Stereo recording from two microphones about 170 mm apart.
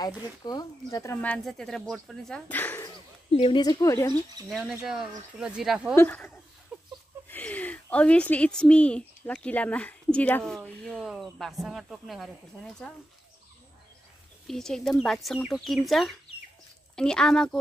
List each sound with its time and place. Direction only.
0.0 s speech: 25° left (ahead or behind)
3.3 s speech: 35° left (ahead or behind)
3.6 s a woman's voice: 20° left (ahead or behind)
4.5 s speech: centre (ahead or behind)
5.9 s speech: 10° left (ahead or behind)
6.7 s a sound: 5° right (ahead or behind)
7.2 s speech: 10° left (ahead or behind)
14.5 s speech: 5° left (ahead or behind)